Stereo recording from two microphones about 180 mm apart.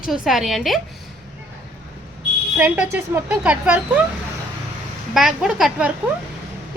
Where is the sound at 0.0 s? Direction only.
Centre (ahead or behind).